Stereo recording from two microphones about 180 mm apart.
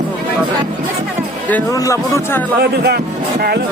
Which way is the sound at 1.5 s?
10° left (ahead or behind).